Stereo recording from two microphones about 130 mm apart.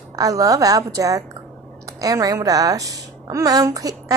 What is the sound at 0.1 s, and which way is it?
A woman's voice, 25° right (ahead or behind).